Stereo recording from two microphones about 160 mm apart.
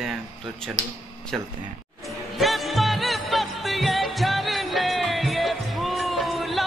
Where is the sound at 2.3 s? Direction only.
Centre (ahead or behind).